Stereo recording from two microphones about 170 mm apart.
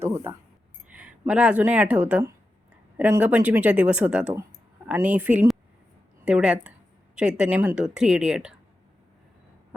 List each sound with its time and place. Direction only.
0.0 s speech: 15° right (ahead or behind)